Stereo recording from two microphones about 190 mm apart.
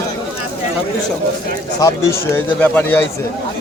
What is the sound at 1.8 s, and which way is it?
Speech, 15° left (ahead or behind).